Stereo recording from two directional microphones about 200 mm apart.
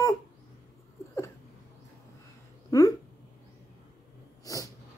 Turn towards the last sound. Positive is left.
turn(degrees=15)  # may be behind; listen again after turning